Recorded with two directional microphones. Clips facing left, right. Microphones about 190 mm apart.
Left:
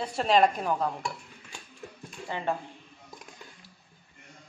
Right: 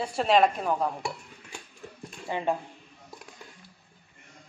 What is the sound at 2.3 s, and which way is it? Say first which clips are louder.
Speech: right 4 dB; 15° right (ahead or behind).